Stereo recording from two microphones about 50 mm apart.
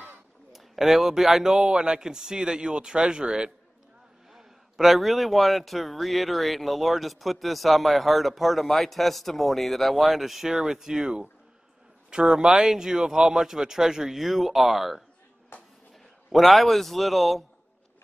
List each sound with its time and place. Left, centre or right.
0.5 s a man's voice: centre
16.3 s a man's voice: centre